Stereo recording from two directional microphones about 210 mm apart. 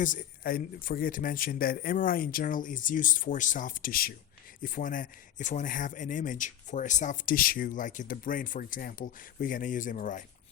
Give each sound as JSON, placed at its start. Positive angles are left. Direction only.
{"t": 0.0, "sound": "speech", "side_deg": 40}